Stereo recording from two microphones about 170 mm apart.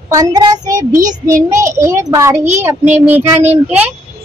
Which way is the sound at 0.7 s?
20° right (ahead or behind).